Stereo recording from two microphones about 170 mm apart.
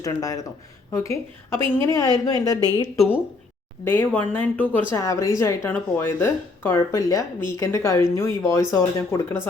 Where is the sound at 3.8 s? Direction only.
15° left (ahead or behind).